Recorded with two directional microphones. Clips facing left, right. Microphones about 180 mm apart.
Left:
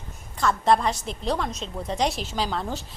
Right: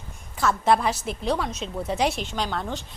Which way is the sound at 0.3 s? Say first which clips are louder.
Even; 5° right (ahead or behind).